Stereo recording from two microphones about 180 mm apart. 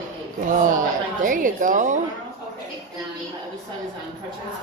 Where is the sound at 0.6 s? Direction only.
45° right (ahead or behind).